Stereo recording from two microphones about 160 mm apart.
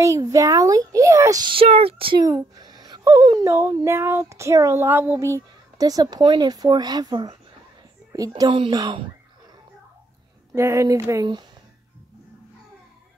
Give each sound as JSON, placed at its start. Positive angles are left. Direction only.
{"t": 0.0, "sound": "speech", "side_deg": -20}
{"t": 2.2, "sound": "speech", "side_deg": -20}
{"t": 10.5, "sound": "speech", "side_deg": -15}